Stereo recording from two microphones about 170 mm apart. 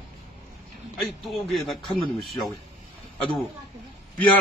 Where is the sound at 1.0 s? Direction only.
Centre (ahead or behind).